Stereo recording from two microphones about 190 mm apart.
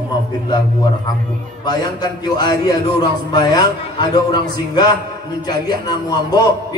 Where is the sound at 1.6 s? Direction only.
20° left (ahead or behind).